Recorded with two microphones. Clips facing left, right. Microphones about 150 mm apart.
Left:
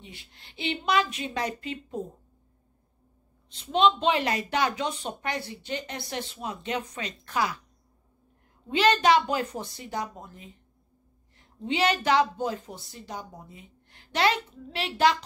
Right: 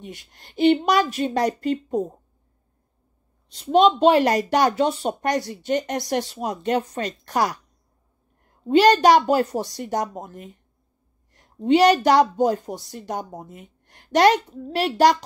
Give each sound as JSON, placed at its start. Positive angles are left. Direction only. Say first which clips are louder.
{"t": 0.0, "sound": "a woman's voice", "louder": "right 9 dB", "side_deg": -45}
{"t": 3.7, "sound": "a woman's voice", "louder": "right 7 dB", "side_deg": -40}
{"t": 8.6, "sound": "a woman's voice", "louder": "right 7 dB", "side_deg": -40}
{"t": 9.8, "sound": "a woman's voice", "louder": "right 8 dB", "side_deg": -45}
{"t": 12.9, "sound": "speech", "louder": "right 8 dB", "side_deg": -50}